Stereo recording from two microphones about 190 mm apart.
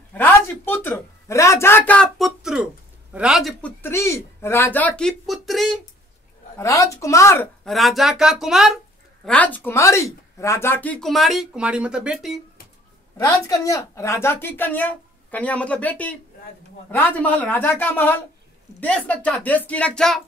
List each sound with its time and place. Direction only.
0.1 s speech: 10° left (ahead or behind)
3.8 s speech: 15° left (ahead or behind)
6.6 s a woman's voice: 15° left (ahead or behind)
7.6 s speech: centre (ahead or behind)
13.2 s a woman's voice: 15° left (ahead or behind)